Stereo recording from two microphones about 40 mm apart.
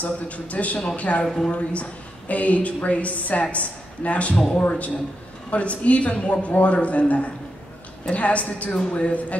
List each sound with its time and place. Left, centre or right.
0.0 s a woman's voice: left
1.2 s a woman's voice: centre
1.5 s a woman's voice: left
8.7 s speech: left
9.0 s a woman's voice: left